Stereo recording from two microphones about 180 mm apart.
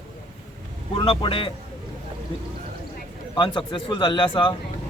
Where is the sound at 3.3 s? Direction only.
25° left (ahead or behind).